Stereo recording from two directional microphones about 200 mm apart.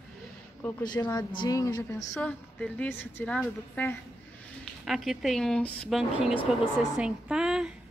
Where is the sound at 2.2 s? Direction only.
5° left (ahead or behind).